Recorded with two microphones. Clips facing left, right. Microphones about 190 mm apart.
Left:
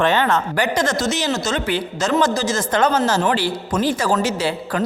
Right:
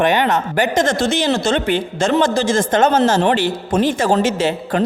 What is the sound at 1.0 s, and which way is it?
Speech, 60° right (ahead or behind).